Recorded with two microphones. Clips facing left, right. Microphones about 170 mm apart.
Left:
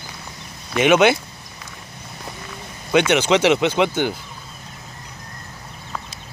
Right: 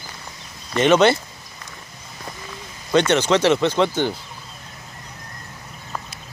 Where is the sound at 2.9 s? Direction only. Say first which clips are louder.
Left 1 dB; 10° left (ahead or behind).